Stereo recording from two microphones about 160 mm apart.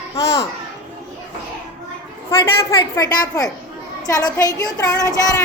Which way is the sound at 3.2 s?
25° left (ahead or behind).